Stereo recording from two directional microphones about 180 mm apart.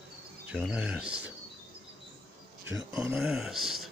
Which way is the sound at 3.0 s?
5° right (ahead or behind).